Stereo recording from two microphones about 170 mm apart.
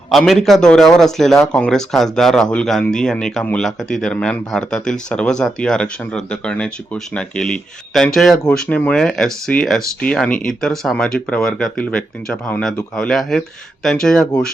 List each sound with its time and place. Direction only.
0.1 s speech: centre (ahead or behind)